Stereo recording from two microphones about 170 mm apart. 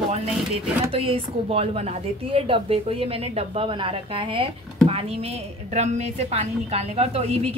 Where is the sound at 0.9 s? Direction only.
35° right (ahead or behind).